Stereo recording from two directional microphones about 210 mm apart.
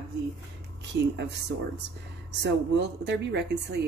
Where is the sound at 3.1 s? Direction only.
50° right (ahead or behind).